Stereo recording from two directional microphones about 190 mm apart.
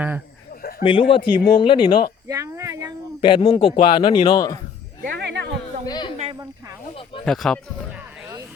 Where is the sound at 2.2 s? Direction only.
15° right (ahead or behind).